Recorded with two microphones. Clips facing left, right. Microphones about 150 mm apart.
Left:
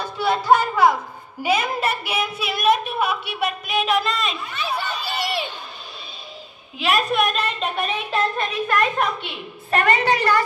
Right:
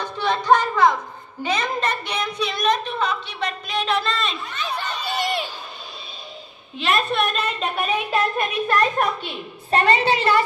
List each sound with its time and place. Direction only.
0.0 s music: 10° left (ahead or behind)
1.4 s a sound: 10° left (ahead or behind)
6.8 s a woman's voice: 5° left (ahead or behind)
8.6 s a woman's voice: 35° right (ahead or behind)